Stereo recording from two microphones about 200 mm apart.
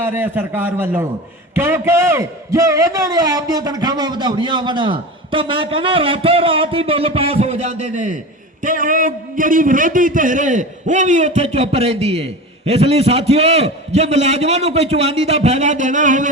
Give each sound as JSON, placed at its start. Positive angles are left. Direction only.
{"t": 0.0, "sound": "a man's voice", "side_deg": -10}